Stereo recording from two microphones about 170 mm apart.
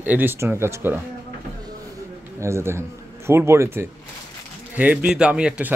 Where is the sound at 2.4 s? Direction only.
15° right (ahead or behind).